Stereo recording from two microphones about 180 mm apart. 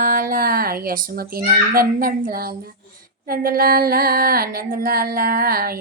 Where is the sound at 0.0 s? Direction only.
50° right (ahead or behind).